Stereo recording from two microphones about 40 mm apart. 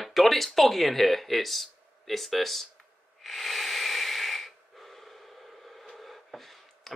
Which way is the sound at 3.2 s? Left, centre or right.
Centre.